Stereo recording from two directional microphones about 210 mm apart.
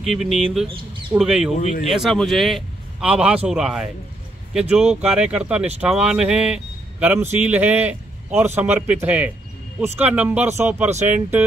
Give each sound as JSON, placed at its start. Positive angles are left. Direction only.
{"t": 0.0, "sound": "speech", "side_deg": 0}
{"t": 1.6, "sound": "speech", "side_deg": 30}
{"t": 1.9, "sound": "speech", "side_deg": 0}